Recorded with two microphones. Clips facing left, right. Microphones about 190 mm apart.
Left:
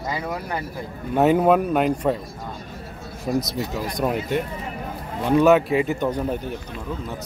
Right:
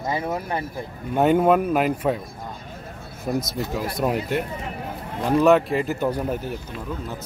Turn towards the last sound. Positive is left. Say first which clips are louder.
# left 1 dB
turn(degrees=-5)  # may be behind; listen again after turning